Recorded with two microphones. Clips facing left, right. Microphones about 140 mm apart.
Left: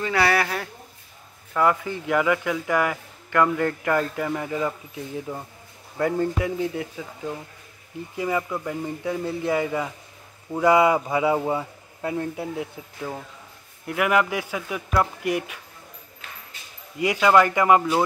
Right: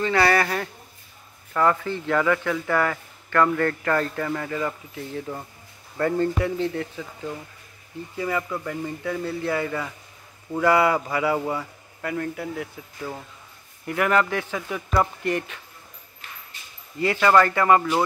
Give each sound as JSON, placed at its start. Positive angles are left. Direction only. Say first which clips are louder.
{"t": 0.0, "sound": "a man's voice", "louder": "right 2 dB", "side_deg": 5}
{"t": 13.8, "sound": "speech", "louder": "even", "side_deg": 5}
{"t": 17.0, "sound": "speech", "louder": "even", "side_deg": 10}